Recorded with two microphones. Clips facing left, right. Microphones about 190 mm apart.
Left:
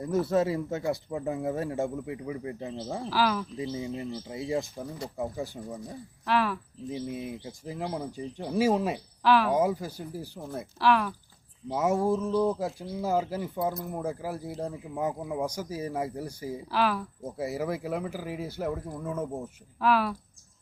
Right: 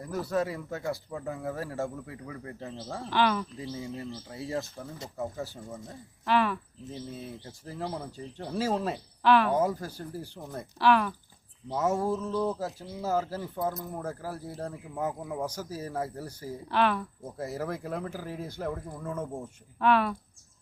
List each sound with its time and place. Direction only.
0.3 s a man's voice: 25° left (ahead or behind)
3.0 s speech: centre (ahead or behind)
3.6 s speech: 20° left (ahead or behind)
6.2 s speech: centre (ahead or behind)
6.9 s speech: 15° left (ahead or behind)
9.2 s speech: centre (ahead or behind)
16.6 s speech: centre (ahead or behind)